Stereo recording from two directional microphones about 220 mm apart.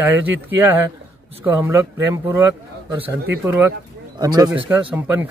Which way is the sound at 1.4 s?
10° right (ahead or behind).